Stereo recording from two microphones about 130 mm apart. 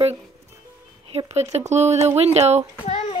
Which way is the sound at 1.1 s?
55° right (ahead or behind).